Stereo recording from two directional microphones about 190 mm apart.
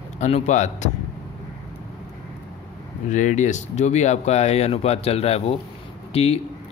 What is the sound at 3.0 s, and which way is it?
Speech, 40° left (ahead or behind).